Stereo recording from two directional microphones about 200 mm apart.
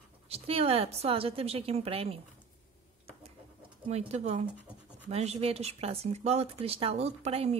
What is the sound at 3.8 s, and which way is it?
Speech, 30° right (ahead or behind).